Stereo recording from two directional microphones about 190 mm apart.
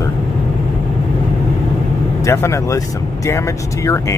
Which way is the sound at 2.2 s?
15° left (ahead or behind).